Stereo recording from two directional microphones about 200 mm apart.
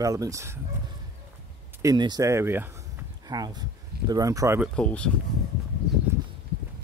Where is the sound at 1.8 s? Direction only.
20° right (ahead or behind).